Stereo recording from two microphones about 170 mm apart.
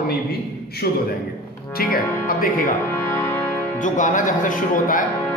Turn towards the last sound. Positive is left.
turn(degrees=50)  # may be behind; listen again after turning